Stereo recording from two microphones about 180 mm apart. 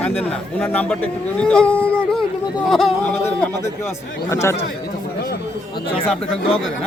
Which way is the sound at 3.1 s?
10° left (ahead or behind).